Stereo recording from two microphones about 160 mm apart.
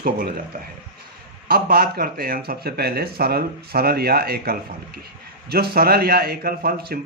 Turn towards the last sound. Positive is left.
turn(degrees=-70)  # may be behind; listen again after turning